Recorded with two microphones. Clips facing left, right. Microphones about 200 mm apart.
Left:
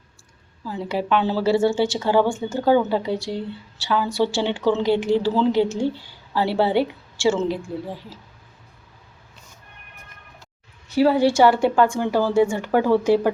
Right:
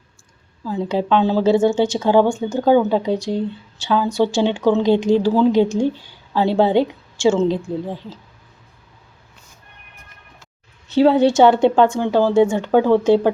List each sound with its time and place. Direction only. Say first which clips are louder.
0.6 s a woman's voice: right 5 dB; 20° right (ahead or behind)
10.8 s a woman's voice: right 4 dB; 25° right (ahead or behind)